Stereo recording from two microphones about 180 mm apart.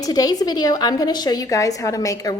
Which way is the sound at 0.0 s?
20° left (ahead or behind).